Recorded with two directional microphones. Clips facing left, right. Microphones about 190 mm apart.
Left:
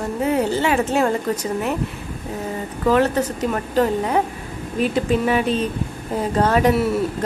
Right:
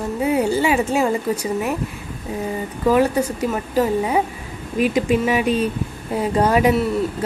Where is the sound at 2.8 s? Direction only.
10° right (ahead or behind).